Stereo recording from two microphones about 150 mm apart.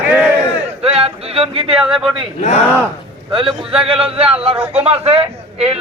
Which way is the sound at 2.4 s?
50° left (ahead or behind).